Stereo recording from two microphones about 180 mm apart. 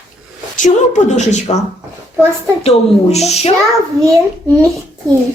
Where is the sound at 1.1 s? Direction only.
40° left (ahead or behind).